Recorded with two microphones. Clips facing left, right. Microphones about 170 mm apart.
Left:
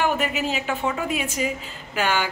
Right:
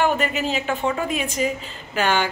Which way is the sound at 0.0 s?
5° left (ahead or behind).